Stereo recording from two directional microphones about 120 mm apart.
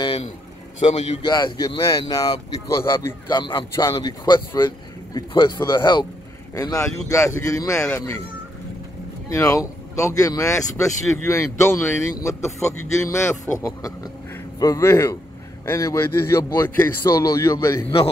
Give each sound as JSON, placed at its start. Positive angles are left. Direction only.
{"t": 0.7, "sound": "a man's voice", "side_deg": 65}
{"t": 1.2, "sound": "speech", "side_deg": 35}
{"t": 2.8, "sound": "speech", "side_deg": 20}
{"t": 3.3, "sound": "speech", "side_deg": 40}
{"t": 3.7, "sound": "speech", "side_deg": 25}
{"t": 9.3, "sound": "speech", "side_deg": 30}